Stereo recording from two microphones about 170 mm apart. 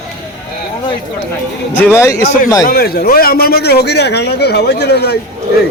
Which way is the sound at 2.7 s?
65° left (ahead or behind).